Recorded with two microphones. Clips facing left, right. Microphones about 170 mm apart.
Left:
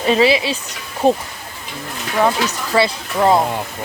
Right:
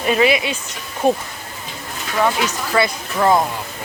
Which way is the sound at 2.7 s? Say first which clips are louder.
Left 2 dB; 25° left (ahead or behind).